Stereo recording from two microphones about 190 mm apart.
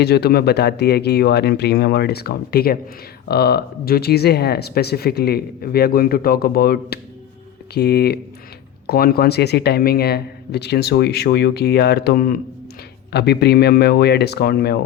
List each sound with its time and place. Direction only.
0.0 s speech: 60° left (ahead or behind)
13.1 s speech: 60° left (ahead or behind)